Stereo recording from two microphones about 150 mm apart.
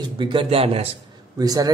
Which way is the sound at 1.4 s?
25° right (ahead or behind).